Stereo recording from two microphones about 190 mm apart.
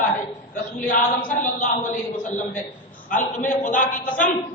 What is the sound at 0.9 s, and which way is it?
Speech, 40° left (ahead or behind).